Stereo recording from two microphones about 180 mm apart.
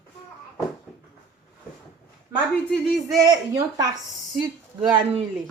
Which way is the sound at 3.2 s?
20° right (ahead or behind).